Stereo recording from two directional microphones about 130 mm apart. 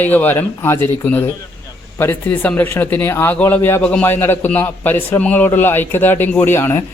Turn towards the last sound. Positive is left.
turn(degrees=20)  # may be behind; listen again after turning